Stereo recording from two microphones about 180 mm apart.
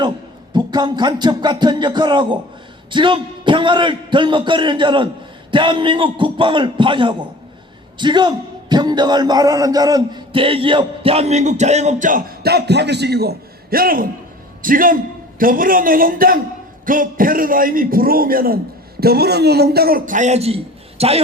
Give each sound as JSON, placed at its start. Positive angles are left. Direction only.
{"t": 0.5, "sound": "a man's voice", "side_deg": -25}